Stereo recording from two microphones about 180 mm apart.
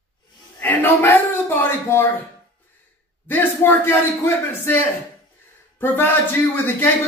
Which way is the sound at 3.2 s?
10° left (ahead or behind).